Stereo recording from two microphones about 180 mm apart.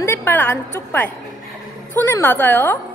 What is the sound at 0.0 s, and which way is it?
A woman's voice, 15° left (ahead or behind).